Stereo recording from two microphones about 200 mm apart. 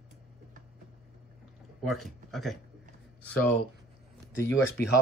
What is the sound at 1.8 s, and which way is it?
Speech, centre (ahead or behind).